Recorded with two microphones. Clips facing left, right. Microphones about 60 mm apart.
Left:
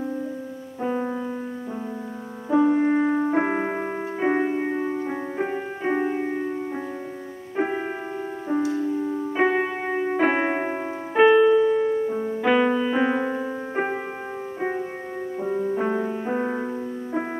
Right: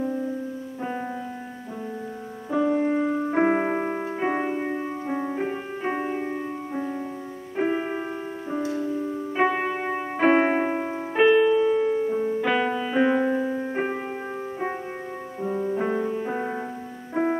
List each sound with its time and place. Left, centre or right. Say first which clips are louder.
0.8 s music: left 6 dB; centre
2.5 s music: left 3 dB; centre
3.3 s piano: right 1 dB; centre
4.6 s music: left 3 dB; centre
7.5 s music: right 1 dB; centre
15.4 s music: left 1 dB; centre
17.1 s music: right 5 dB; centre